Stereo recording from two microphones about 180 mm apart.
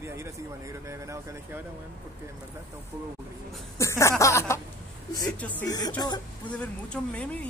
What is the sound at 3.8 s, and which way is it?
Speech, 15° left (ahead or behind).